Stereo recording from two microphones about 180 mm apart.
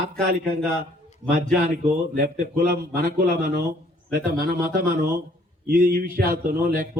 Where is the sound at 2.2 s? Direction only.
55° right (ahead or behind).